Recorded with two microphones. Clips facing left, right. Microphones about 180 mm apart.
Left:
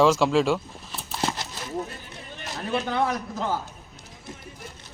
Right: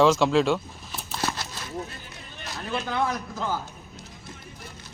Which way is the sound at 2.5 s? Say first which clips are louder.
Left 3 dB; 25° left (ahead or behind).